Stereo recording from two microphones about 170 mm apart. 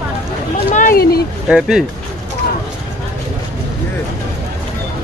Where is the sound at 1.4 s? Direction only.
5° right (ahead or behind).